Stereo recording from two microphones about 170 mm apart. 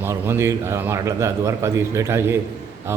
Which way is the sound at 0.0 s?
15° right (ahead or behind).